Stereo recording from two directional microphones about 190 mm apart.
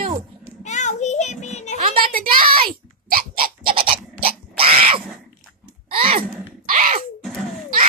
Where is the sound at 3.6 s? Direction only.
25° right (ahead or behind).